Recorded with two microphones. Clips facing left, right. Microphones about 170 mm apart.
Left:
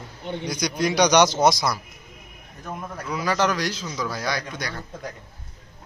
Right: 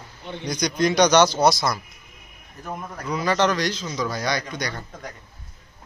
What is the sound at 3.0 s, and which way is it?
A man's voice, 5° left (ahead or behind).